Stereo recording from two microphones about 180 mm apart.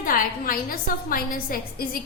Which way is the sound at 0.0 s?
50° left (ahead or behind).